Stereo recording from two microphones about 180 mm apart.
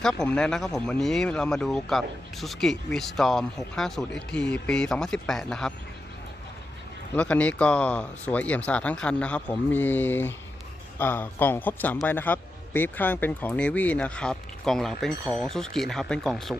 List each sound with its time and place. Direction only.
0.0 s speech: 5° left (ahead or behind)
7.1 s speech: 5° left (ahead or behind)